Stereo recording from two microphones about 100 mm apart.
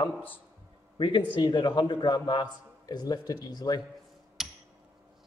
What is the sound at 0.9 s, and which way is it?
A man's voice, 50° left (ahead or behind).